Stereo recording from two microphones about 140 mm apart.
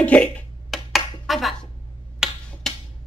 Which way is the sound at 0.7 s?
Centre (ahead or behind).